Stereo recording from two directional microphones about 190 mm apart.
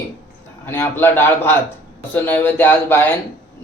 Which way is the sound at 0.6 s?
10° left (ahead or behind).